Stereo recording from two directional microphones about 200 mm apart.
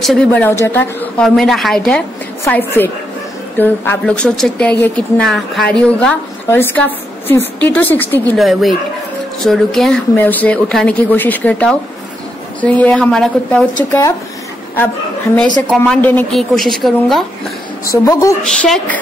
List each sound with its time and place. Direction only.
0.0 s a woman's voice: centre (ahead or behind)
15.7 s a woman's voice: 5° left (ahead or behind)
17.9 s a woman's voice: 15° left (ahead or behind)
18.4 s a woman's voice: 5° left (ahead or behind)